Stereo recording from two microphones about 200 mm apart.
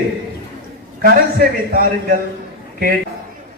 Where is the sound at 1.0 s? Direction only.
50° right (ahead or behind).